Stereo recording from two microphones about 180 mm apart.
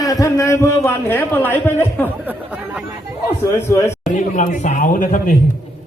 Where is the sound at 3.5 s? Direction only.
15° left (ahead or behind).